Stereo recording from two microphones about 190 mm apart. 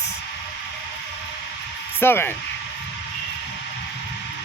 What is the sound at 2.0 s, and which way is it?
Speech, 10° left (ahead or behind).